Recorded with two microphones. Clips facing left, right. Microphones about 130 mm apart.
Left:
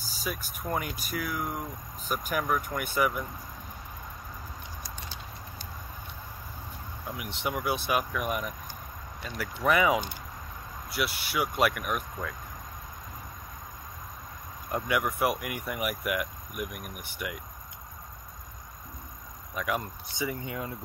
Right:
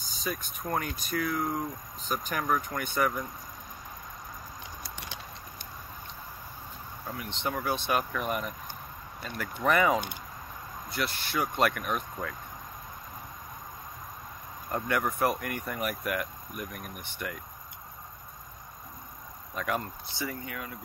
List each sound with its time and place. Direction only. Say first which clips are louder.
0.0 s speech: right 1 dB; 5° left (ahead or behind)
7.2 s speech: even; 10° left (ahead or behind)
14.7 s speech: left 1 dB; 5° left (ahead or behind)
19.5 s speech: even; 10° left (ahead or behind); by 20.7 s 25° left (ahead or behind)